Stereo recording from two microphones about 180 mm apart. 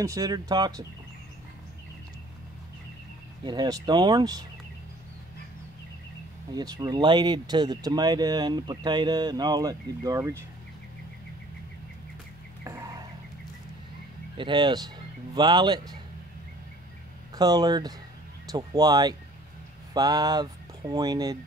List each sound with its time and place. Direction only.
0.0 s speech: 20° right (ahead or behind)
3.4 s speech: 25° right (ahead or behind)
6.5 s speech: 20° right (ahead or behind)
12.6 s a sound: 20° right (ahead or behind)
14.3 s speech: 25° right (ahead or behind)
17.4 s speech: 20° right (ahead or behind)